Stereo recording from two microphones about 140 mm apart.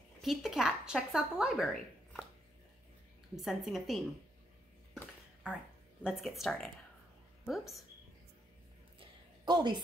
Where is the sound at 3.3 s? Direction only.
Centre (ahead or behind).